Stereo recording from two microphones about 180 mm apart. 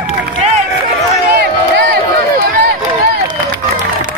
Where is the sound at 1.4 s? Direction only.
60° right (ahead or behind).